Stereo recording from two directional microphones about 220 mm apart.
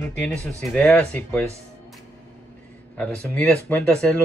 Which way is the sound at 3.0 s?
5° left (ahead or behind).